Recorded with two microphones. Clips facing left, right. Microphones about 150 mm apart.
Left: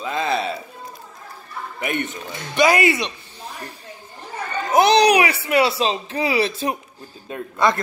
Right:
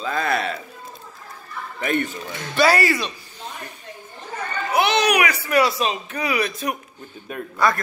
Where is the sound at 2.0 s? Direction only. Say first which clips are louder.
Even; 20° left (ahead or behind).